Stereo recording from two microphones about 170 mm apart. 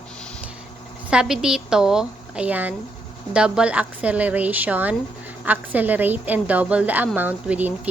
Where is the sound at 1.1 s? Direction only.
5° right (ahead or behind).